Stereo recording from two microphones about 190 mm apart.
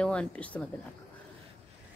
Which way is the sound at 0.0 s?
5° left (ahead or behind).